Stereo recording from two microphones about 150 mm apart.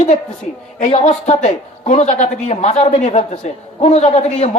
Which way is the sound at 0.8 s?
50° left (ahead or behind).